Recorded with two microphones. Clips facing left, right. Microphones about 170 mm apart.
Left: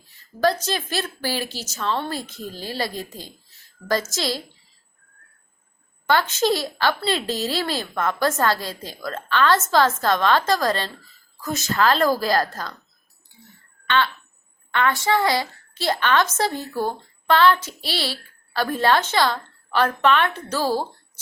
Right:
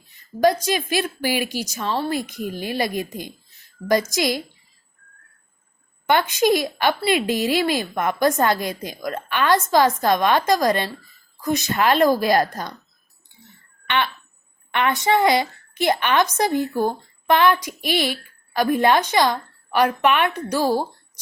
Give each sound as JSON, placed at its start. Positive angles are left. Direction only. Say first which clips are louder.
{"t": 0.1, "sound": "a woman's voice", "louder": "right 3 dB", "side_deg": -15}
{"t": 6.1, "sound": "a woman's voice", "louder": "right 2 dB", "side_deg": -15}
{"t": 13.8, "sound": "a woman's voice", "louder": "left 1 dB", "side_deg": -20}